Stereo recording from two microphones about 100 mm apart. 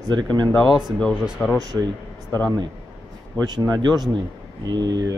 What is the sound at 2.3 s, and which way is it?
Speech, 25° left (ahead or behind).